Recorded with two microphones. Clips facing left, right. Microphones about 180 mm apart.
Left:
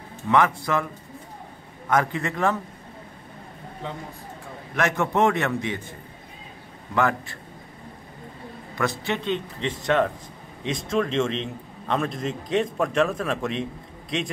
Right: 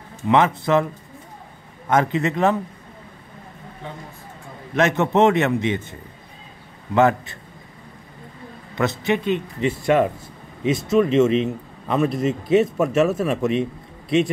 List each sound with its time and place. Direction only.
0.3 s a man's voice: 20° right (ahead or behind)
1.9 s a man's voice: 20° right (ahead or behind)
4.7 s a man's voice: 20° right (ahead or behind)
7.0 s a man's voice: 20° right (ahead or behind)
8.7 s a man's voice: 20° right (ahead or behind); by 14.3 s 5° right (ahead or behind)